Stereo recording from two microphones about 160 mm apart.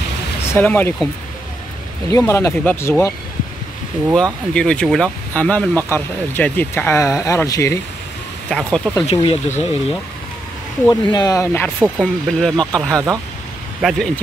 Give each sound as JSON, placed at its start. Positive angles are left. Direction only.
{"t": 0.6, "sound": "speech", "side_deg": 10}
{"t": 2.1, "sound": "speech", "side_deg": 15}
{"t": 4.1, "sound": "speech", "side_deg": 5}
{"t": 8.5, "sound": "speech", "side_deg": 5}
{"t": 9.1, "sound": "speech", "side_deg": 30}
{"t": 9.5, "sound": "speech", "side_deg": 45}
{"t": 10.9, "sound": "speech", "side_deg": 25}
{"t": 11.8, "sound": "speech", "side_deg": 0}
{"t": 12.9, "sound": "speech", "side_deg": -20}
{"t": 13.7, "sound": "speech", "side_deg": 0}